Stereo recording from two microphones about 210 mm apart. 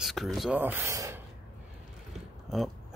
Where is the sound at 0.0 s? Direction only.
Centre (ahead or behind).